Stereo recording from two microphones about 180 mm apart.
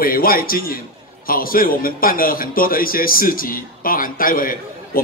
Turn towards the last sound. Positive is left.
turn(degrees=50)  # may be behind; listen again after turning